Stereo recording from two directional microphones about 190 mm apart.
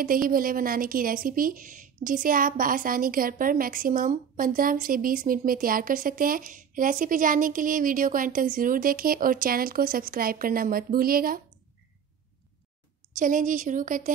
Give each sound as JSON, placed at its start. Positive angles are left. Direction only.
{"t": 0.0, "sound": "speech", "side_deg": -50}
{"t": 13.1, "sound": "speech", "side_deg": -45}